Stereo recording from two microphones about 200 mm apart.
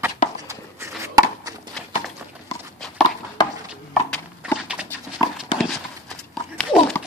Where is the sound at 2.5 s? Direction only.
15° left (ahead or behind).